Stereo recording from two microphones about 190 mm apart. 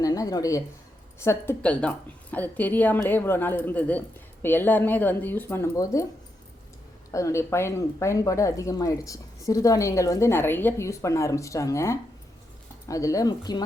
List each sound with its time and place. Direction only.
0.0 s speech: 20° left (ahead or behind)
7.1 s speech: 15° left (ahead or behind)